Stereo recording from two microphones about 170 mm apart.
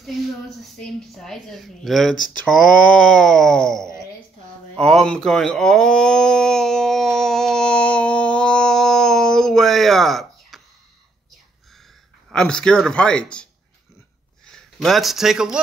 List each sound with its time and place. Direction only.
0.6 s a woman's voice: centre (ahead or behind)
5.0 s a sound: 5° left (ahead or behind)
12.3 s a woman's voice: 5° left (ahead or behind)